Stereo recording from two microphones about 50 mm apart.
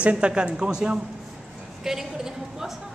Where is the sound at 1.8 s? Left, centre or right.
Centre.